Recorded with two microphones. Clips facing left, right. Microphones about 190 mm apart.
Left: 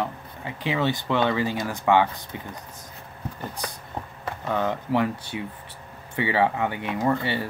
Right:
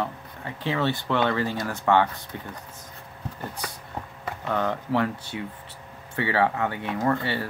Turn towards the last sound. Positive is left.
turn(degrees=15)  # may be behind; listen again after turning